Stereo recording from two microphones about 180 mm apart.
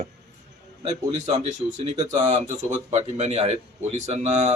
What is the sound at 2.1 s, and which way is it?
A man's voice, 40° right (ahead or behind).